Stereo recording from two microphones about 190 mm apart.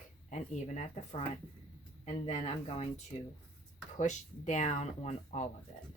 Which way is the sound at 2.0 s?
35° left (ahead or behind).